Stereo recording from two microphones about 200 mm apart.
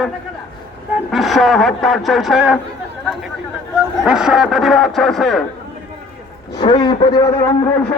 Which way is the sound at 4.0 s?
5° right (ahead or behind).